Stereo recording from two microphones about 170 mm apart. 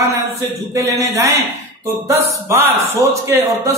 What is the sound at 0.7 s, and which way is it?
Speech, 20° right (ahead or behind).